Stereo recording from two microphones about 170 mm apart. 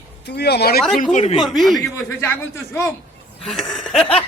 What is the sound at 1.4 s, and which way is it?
Speech, centre (ahead or behind).